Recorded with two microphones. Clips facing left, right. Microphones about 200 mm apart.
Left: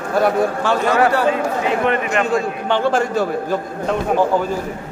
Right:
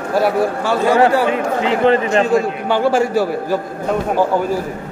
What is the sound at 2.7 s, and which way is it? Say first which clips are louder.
Speech: right 3 dB; 10° right (ahead or behind).